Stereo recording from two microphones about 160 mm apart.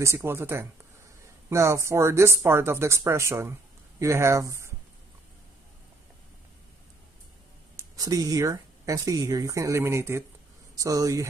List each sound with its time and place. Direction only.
0.0 s speech: 15° right (ahead or behind)
7.7 s speech: 20° right (ahead or behind)